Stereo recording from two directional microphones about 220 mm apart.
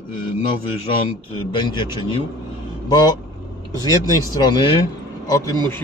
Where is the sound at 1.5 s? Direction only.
20° left (ahead or behind).